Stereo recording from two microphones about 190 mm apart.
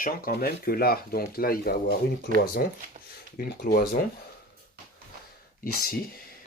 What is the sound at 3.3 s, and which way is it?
Speech, 55° left (ahead or behind).